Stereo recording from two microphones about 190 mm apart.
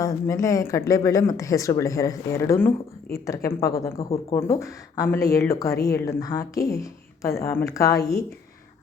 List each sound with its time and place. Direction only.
0.0 s speech: 15° left (ahead or behind)